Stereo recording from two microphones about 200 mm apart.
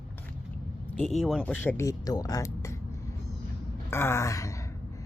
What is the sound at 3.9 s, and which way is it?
Sigh, 15° left (ahead or behind).